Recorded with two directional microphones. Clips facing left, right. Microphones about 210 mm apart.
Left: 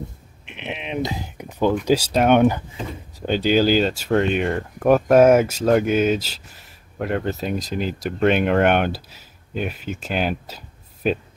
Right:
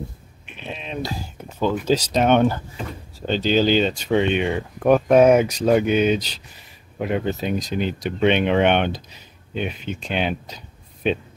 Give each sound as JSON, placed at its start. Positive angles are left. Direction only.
{"t": 0.5, "sound": "bleat", "side_deg": 20}
{"t": 1.9, "sound": "speech", "side_deg": 10}